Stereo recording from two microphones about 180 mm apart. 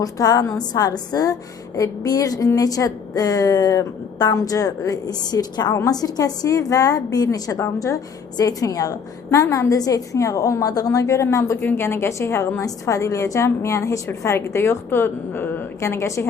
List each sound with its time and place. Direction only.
0.0 s a woman's voice: 20° left (ahead or behind)